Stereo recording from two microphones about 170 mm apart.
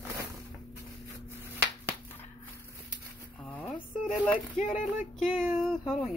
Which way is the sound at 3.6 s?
Centre (ahead or behind).